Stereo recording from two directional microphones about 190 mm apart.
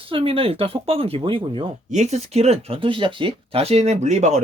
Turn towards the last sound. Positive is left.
turn(degrees=-35)  # may be behind; listen again after turning